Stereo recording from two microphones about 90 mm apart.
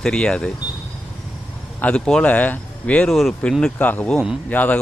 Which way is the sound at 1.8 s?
10° left (ahead or behind).